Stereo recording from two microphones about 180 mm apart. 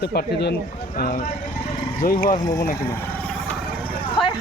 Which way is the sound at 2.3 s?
20° left (ahead or behind).